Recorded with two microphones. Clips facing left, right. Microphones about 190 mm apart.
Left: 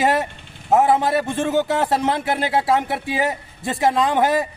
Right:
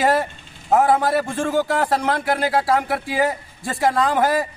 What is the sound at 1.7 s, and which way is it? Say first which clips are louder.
A man's voice: left 1 dB; 20° left (ahead or behind).